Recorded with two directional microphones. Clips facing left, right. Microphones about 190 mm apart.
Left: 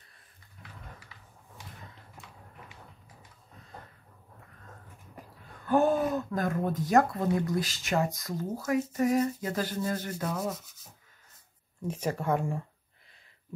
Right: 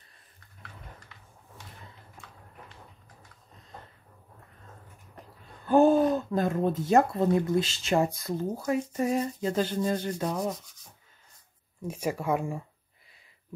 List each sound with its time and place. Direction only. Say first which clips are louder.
0.6 s dog: even; 10° left (ahead or behind)
5.7 s speech: right 5 dB; 30° right (ahead or behind)
11.9 s speech: right 1 dB; 10° right (ahead or behind)